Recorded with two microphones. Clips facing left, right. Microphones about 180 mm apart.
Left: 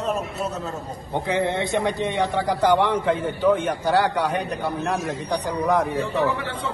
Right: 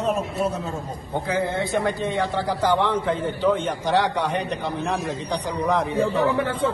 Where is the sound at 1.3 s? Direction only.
20° left (ahead or behind).